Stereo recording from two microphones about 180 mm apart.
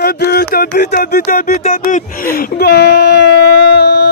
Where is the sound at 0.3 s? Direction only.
60° left (ahead or behind).